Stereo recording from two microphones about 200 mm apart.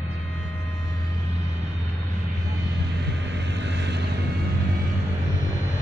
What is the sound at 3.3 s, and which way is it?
Vehicle, 60° right (ahead or behind).